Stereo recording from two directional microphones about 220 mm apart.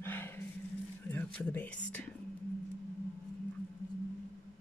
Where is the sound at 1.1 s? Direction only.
10° left (ahead or behind).